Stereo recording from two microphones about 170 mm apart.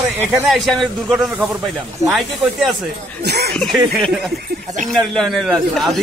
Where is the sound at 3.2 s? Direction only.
75° right (ahead or behind).